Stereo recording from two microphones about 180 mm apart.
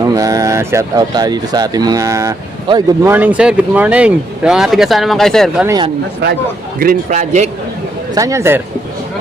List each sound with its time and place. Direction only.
0.0 s speech: 20° right (ahead or behind)
3.0 s speech: 10° right (ahead or behind)
5.6 s speech: 20° right (ahead or behind)
6.7 s a man's voice: 50° right (ahead or behind)
8.1 s speech: 15° right (ahead or behind)